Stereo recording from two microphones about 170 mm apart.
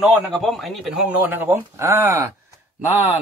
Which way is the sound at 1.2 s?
10° right (ahead or behind).